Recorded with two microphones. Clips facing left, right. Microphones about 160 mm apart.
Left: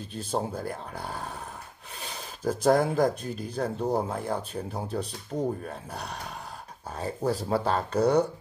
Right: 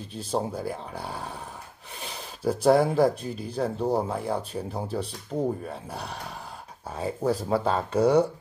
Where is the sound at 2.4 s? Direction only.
5° right (ahead or behind).